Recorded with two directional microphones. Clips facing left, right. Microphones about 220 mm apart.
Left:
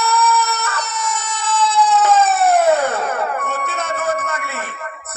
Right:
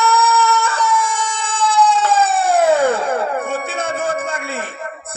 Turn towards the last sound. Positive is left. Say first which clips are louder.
# right 1 dB
turn(degrees=-30)  # may be behind; listen again after turning